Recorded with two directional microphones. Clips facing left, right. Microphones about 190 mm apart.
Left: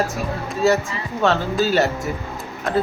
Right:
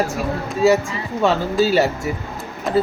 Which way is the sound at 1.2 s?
10° right (ahead or behind).